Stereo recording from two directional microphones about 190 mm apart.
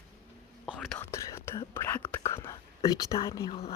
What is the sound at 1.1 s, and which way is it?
Whispering, 15° left (ahead or behind).